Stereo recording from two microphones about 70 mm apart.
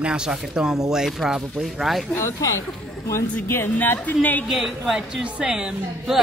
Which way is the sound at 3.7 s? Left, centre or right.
Left.